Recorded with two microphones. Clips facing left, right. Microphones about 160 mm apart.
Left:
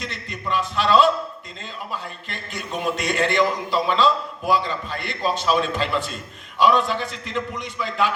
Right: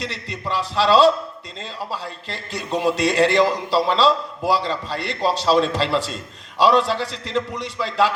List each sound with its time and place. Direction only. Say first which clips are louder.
0.0 s a man's voice: right 3 dB; 90° right
0.4 s a man's voice: right 2 dB; 35° right (ahead or behind)
7.0 s a man's voice: right 3 dB; 90° right
7.8 s a man's voice: right 4 dB; 35° right (ahead or behind)